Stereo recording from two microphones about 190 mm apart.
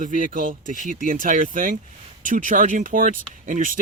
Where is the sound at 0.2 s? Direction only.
45° right (ahead or behind).